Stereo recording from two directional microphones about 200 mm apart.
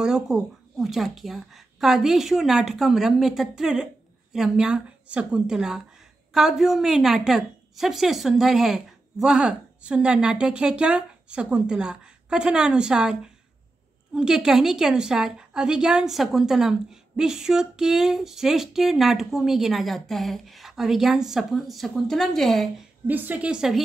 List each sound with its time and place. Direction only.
0.0 s a woman's voice: 5° right (ahead or behind)